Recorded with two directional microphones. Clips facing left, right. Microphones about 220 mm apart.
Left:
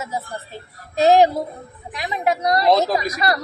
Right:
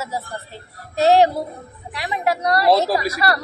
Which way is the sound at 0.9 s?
15° left (ahead or behind).